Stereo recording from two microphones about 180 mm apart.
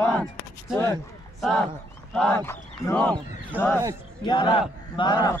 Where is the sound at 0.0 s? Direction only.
5° left (ahead or behind).